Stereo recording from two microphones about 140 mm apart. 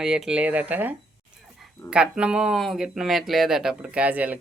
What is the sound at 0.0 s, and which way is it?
Speech, 5° right (ahead or behind).